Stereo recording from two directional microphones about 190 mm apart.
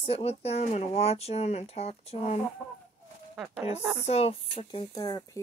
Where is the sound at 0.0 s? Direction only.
30° left (ahead or behind).